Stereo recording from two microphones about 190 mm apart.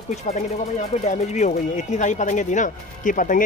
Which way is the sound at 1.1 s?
40° left (ahead or behind).